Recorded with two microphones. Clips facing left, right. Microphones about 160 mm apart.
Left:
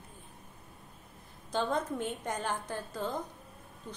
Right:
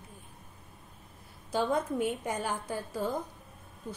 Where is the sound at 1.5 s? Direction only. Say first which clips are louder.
Right 2 dB; 10° right (ahead or behind).